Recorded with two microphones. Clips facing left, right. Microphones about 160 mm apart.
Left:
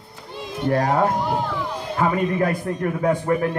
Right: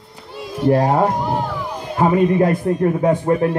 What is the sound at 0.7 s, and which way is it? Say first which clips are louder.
Speech: right 5 dB; 30° right (ahead or behind).